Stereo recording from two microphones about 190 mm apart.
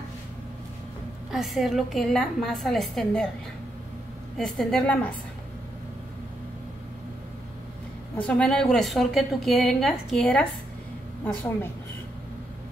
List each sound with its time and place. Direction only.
1.3 s a woman's voice: centre (ahead or behind)
4.4 s a woman's voice: centre (ahead or behind)
8.2 s a woman's voice: 5° left (ahead or behind)